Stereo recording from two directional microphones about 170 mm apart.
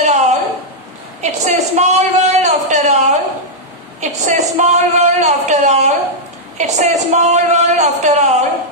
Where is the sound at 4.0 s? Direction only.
45° right (ahead or behind).